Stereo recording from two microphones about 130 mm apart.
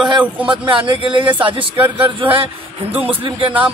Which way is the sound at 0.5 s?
40° right (ahead or behind).